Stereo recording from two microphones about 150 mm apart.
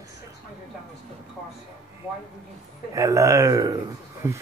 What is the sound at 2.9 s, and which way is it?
Speech, 20° right (ahead or behind).